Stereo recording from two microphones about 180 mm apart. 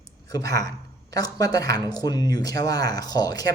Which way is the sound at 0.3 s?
20° left (ahead or behind).